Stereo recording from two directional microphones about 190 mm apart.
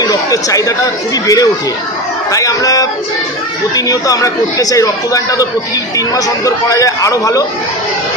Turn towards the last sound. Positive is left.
turn(degrees=15)  # may be behind; listen again after turning